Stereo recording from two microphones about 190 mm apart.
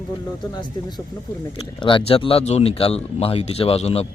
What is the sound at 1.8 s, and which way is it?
Speech, 25° left (ahead or behind).